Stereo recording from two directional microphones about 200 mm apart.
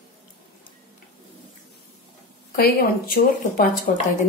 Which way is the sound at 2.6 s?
50° left (ahead or behind).